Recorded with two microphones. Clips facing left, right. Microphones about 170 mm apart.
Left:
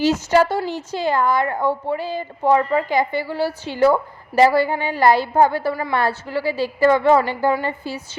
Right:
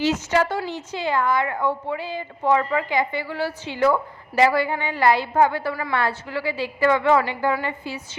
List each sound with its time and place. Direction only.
0.0 s a woman's voice: 35° left (ahead or behind)